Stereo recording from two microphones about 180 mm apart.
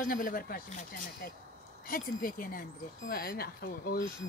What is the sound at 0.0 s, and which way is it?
Speech, 50° left (ahead or behind).